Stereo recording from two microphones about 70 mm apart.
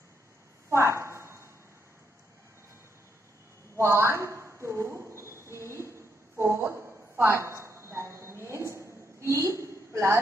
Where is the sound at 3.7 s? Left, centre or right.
Right.